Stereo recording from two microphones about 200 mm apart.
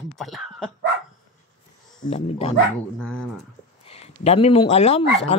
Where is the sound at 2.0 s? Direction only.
30° left (ahead or behind).